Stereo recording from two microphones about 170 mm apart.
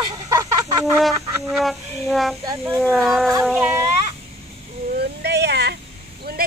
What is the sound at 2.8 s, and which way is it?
Child singing, centre (ahead or behind).